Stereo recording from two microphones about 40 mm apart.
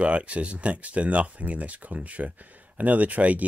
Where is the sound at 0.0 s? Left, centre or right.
Right.